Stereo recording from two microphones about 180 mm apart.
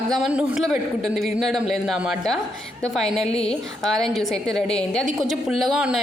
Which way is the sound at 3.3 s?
35° left (ahead or behind).